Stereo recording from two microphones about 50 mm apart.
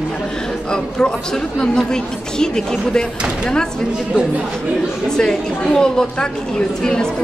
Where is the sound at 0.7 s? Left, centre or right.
Centre.